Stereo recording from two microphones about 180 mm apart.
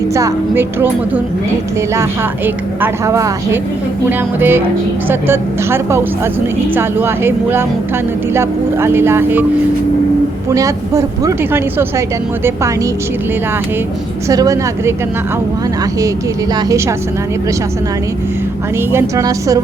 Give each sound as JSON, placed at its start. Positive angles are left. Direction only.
{"t": 0.1, "sound": "speech", "side_deg": -15}
{"t": 2.8, "sound": "speech", "side_deg": -15}
{"t": 10.5, "sound": "speech", "side_deg": -20}
{"t": 14.3, "sound": "speech", "side_deg": -20}
{"t": 16.6, "sound": "speech", "side_deg": -20}
{"t": 18.9, "sound": "speech", "side_deg": -15}